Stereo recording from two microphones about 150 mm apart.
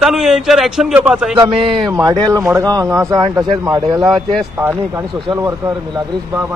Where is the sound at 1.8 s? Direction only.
25° right (ahead or behind).